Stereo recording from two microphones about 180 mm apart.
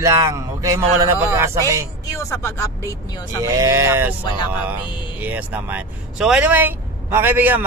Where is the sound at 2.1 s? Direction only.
15° left (ahead or behind).